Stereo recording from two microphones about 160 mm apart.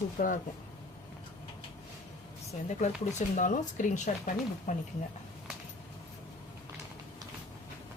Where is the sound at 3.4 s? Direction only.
55° left (ahead or behind).